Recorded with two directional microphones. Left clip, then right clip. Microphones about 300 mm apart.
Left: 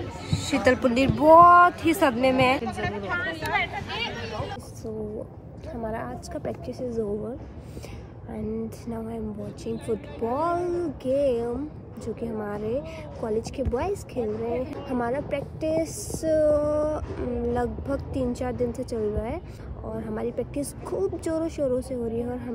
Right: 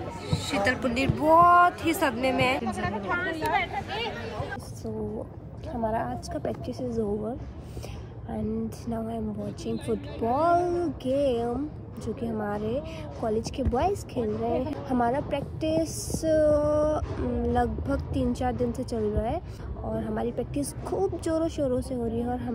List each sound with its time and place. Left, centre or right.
0.3 s music: centre
0.8 s a woman's voice: centre
2.9 s a sound: right
5.7 s a woman's voice: centre
8.3 s a woman's voice: centre
10.2 s a woman's voice: centre